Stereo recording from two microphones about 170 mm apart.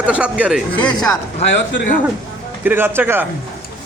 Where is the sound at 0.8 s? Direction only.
5° left (ahead or behind).